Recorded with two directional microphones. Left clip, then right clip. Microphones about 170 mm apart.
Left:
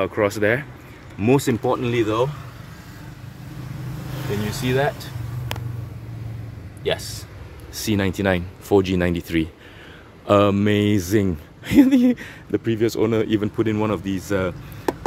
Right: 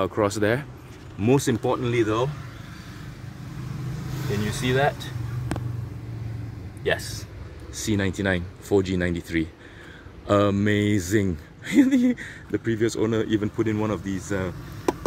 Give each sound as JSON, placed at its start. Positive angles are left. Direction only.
{"t": 0.0, "sound": "speech", "side_deg": -5}
{"t": 1.2, "sound": "speech", "side_deg": 10}
{"t": 4.1, "sound": "vehicle", "side_deg": 60}
{"t": 7.7, "sound": "speech", "side_deg": 15}